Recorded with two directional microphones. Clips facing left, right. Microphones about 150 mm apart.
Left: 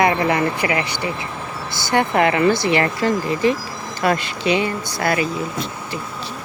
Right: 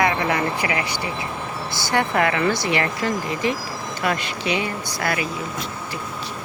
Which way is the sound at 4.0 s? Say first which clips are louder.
Left 5 dB; 35° left (ahead or behind).